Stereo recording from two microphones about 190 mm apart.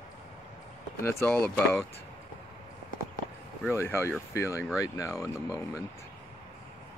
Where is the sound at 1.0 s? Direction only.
10° left (ahead or behind).